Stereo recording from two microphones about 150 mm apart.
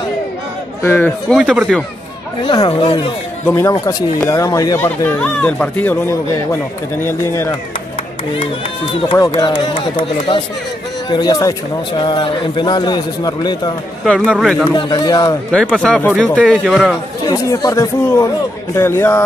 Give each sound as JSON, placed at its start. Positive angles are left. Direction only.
{"t": 0.8, "sound": "speech", "side_deg": 10}
{"t": 1.3, "sound": "speech", "side_deg": -5}
{"t": 2.4, "sound": "speech", "side_deg": 30}
{"t": 3.5, "sound": "speech", "side_deg": 20}
{"t": 9.4, "sound": "speech", "side_deg": 30}
{"t": 11.1, "sound": "a man's voice", "side_deg": 25}
{"t": 14.0, "sound": "speech", "side_deg": 5}
{"t": 14.7, "sound": "a man's voice", "side_deg": 30}
{"t": 15.5, "sound": "speech", "side_deg": 5}
{"t": 17.2, "sound": "a man's voice", "side_deg": 25}